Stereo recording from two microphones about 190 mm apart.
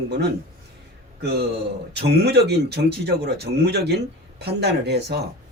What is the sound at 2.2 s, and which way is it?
Speech, 60° right (ahead or behind).